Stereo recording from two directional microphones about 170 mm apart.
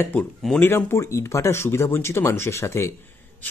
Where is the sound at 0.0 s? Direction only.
5° left (ahead or behind).